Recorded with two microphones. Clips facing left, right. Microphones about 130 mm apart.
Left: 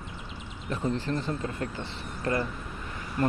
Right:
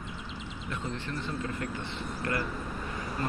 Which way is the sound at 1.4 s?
30° left (ahead or behind).